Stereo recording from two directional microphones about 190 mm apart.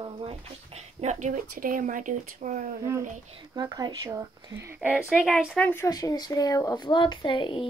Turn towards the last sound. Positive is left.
turn(degrees=25)  # may be behind; listen again after turning